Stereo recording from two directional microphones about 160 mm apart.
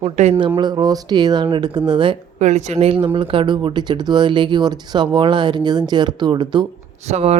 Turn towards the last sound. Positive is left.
turn(degrees=-45)  # may be behind; listen again after turning